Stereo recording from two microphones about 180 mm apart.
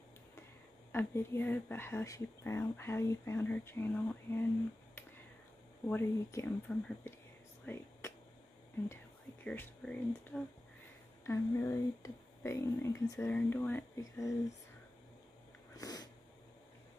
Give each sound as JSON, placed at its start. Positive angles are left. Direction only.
{"t": 0.9, "sound": "speech", "side_deg": 10}
{"t": 5.9, "sound": "speech", "side_deg": 10}
{"t": 7.6, "sound": "a sound", "side_deg": 15}
{"t": 8.8, "sound": "speech", "side_deg": 10}
{"t": 11.2, "sound": "speech", "side_deg": 15}
{"t": 15.7, "sound": "a sound", "side_deg": 20}